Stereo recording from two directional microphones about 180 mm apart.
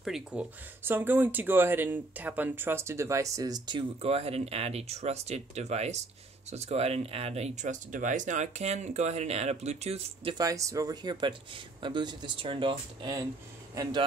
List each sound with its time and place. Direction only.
0.0 s speech: 5° right (ahead or behind); by 10.3 s 35° right (ahead or behind)
10.3 s speech: 20° right (ahead or behind)